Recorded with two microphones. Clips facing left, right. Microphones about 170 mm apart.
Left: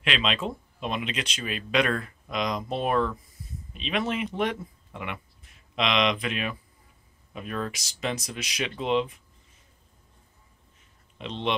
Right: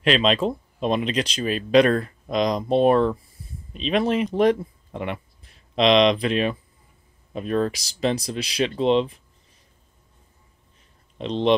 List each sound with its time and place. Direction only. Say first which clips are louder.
0.0 s speech: right 8 dB; 40° right (ahead or behind)
11.1 s speech: right 9 dB; 35° right (ahead or behind)